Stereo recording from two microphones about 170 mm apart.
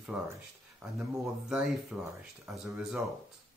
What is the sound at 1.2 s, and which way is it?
Speech, 5° right (ahead or behind).